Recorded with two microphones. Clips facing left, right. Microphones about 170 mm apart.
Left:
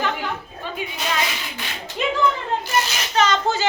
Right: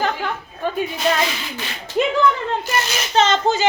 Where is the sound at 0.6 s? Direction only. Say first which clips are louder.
Right 9 dB; 50° right (ahead or behind).